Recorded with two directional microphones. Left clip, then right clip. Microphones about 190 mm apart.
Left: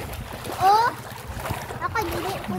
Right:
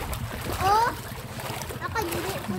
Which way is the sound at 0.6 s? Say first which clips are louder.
Left 4 dB; 35° left (ahead or behind).